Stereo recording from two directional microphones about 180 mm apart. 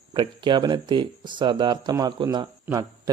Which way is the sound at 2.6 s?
20° right (ahead or behind).